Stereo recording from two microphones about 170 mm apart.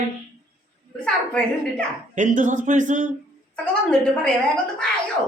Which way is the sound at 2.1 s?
50° right (ahead or behind).